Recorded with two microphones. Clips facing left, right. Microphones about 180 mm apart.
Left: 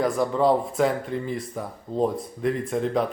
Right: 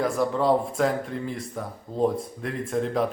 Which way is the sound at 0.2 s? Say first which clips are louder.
Even; centre (ahead or behind).